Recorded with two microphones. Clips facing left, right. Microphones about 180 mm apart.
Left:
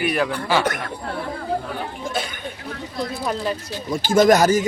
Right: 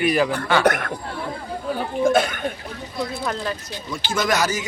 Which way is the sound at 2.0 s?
50° right (ahead or behind).